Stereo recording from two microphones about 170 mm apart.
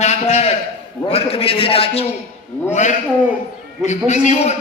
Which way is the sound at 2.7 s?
45° left (ahead or behind).